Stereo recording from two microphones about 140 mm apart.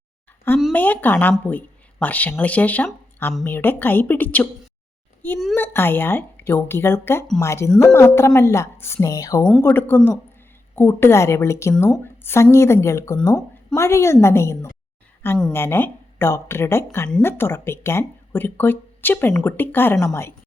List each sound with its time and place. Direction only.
0.7 s speech: 10° left (ahead or behind)
9.6 s speech: 15° left (ahead or behind)